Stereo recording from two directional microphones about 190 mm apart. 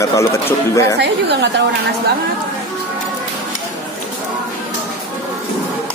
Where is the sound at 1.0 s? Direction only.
60° right (ahead or behind).